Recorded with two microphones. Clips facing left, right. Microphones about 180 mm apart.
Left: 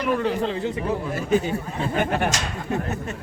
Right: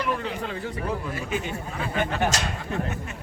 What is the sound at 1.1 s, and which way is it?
Speech, 35° left (ahead or behind).